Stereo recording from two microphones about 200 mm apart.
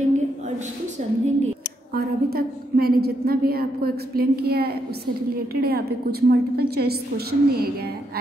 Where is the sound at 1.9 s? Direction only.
50° right (ahead or behind).